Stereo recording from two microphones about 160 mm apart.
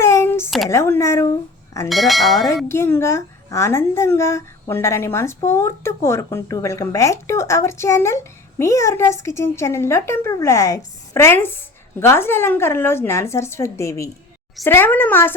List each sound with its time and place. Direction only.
0.0 s a sound: 15° left (ahead or behind)
0.7 s a woman's voice: 15° left (ahead or behind)
1.9 s speech: centre (ahead or behind)
2.6 s a woman's voice: 15° left (ahead or behind)